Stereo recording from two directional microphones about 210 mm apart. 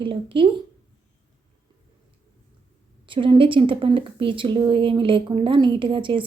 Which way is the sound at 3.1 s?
25° right (ahead or behind).